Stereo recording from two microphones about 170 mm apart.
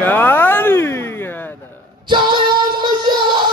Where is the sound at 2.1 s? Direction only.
25° right (ahead or behind).